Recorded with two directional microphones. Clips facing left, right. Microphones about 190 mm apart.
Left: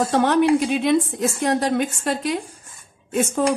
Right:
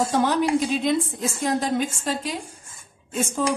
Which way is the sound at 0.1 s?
65° left (ahead or behind).